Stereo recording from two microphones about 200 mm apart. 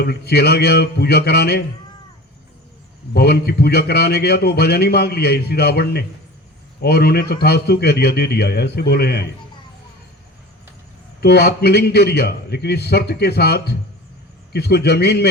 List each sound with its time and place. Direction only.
0.0 s a man's voice: 55° left (ahead or behind)
3.1 s a man's voice: 50° left (ahead or behind)
11.2 s a man's voice: 55° left (ahead or behind)